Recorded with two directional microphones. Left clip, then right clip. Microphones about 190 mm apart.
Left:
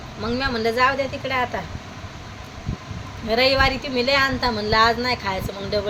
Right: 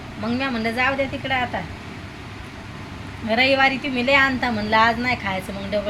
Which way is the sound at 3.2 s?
10° left (ahead or behind).